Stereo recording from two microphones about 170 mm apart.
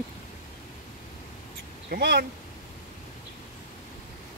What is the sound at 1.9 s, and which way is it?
Speech, 75° right (ahead or behind).